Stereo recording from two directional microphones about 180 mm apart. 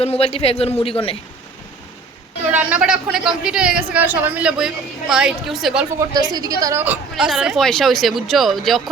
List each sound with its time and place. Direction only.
0.0 s a man's voice: 35° left (ahead or behind)
2.5 s a woman's voice: 10° right (ahead or behind)
6.3 s a woman's voice: 20° right (ahead or behind); by 8.8 s centre (ahead or behind)